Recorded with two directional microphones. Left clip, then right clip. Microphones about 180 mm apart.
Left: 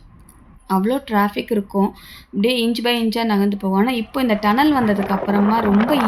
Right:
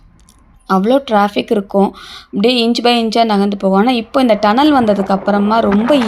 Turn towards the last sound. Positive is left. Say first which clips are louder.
# right 6 dB
turn(degrees=-35)  # may be behind; listen again after turning